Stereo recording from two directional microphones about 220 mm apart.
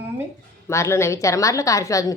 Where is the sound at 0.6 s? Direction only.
15° left (ahead or behind).